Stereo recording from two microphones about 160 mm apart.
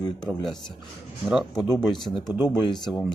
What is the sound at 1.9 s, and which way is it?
Speech, 30° left (ahead or behind).